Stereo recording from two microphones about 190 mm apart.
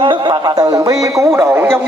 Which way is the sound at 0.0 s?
25° right (ahead or behind).